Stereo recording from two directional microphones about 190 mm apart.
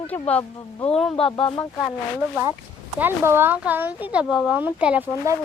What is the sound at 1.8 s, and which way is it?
Speech, 5° right (ahead or behind).